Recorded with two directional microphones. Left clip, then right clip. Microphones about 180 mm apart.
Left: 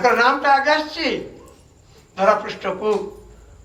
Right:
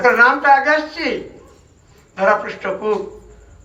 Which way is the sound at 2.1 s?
35° left (ahead or behind).